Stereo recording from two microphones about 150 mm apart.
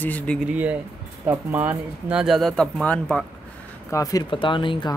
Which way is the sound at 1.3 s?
10° right (ahead or behind).